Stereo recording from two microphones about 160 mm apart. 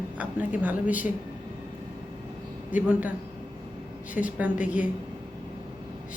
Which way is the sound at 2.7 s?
10° right (ahead or behind).